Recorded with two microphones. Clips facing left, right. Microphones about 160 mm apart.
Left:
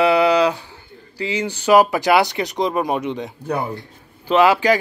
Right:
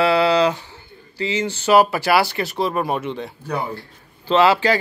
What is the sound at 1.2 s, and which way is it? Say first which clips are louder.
A man's voice: even; 10° left (ahead or behind).